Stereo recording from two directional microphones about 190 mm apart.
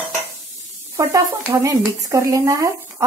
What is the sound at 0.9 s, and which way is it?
Speech, 15° right (ahead or behind).